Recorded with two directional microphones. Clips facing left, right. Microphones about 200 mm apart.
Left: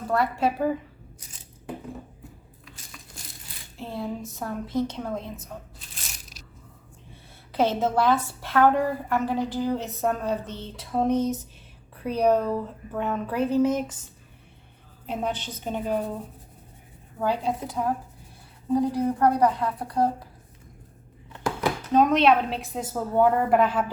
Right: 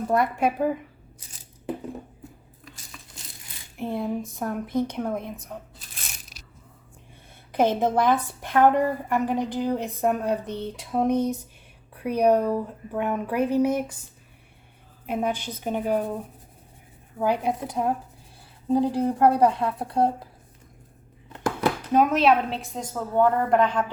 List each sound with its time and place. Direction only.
0.1 s a woman's voice: 15° right (ahead or behind)
3.8 s a woman's voice: 20° right (ahead or behind)
7.5 s a woman's voice: 15° right (ahead or behind)
15.0 s a woman's voice: 10° right (ahead or behind)
17.2 s a woman's voice: 15° right (ahead or behind)
21.9 s a woman's voice: 5° right (ahead or behind)